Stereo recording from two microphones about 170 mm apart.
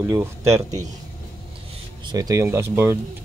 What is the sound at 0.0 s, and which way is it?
Speech, 15° right (ahead or behind).